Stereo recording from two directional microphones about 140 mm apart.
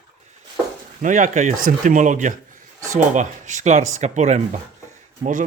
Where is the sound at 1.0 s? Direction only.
60° right (ahead or behind).